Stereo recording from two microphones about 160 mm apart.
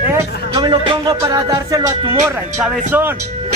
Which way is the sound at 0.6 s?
30° right (ahead or behind).